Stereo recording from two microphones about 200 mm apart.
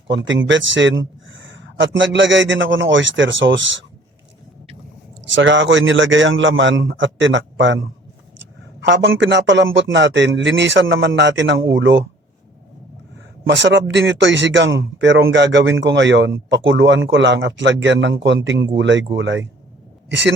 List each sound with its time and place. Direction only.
0.1 s speech: 65° right (ahead or behind)
5.3 s a man's voice: 70° right (ahead or behind)
13.5 s a man's voice: 65° right (ahead or behind)